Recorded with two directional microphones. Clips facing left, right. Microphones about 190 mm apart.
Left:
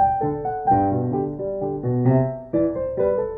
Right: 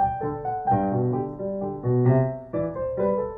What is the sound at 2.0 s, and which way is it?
Music, 25° left (ahead or behind).